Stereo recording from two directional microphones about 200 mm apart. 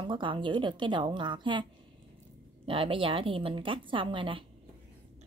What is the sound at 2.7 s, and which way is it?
Speech, 25° right (ahead or behind).